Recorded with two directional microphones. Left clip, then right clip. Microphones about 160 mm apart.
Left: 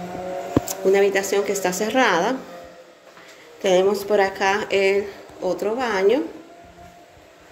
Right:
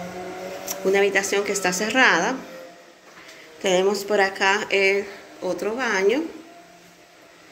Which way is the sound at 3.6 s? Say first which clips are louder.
Left 3 dB; 10° left (ahead or behind).